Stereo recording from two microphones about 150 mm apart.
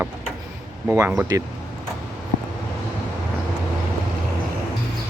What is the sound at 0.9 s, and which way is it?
Speech, 15° right (ahead or behind).